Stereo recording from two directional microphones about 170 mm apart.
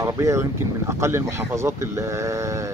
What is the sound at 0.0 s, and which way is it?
Speech, 15° right (ahead or behind).